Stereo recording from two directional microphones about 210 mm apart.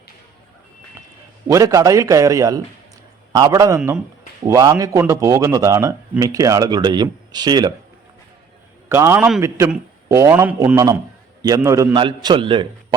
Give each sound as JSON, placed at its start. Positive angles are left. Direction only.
{"t": 1.5, "sound": "a man's voice", "side_deg": -15}
{"t": 3.8, "sound": "speech", "side_deg": -5}
{"t": 4.4, "sound": "a man's voice", "side_deg": -15}
{"t": 8.9, "sound": "a man's voice", "side_deg": -10}